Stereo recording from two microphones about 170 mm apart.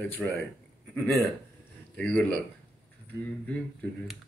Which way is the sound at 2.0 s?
5° left (ahead or behind).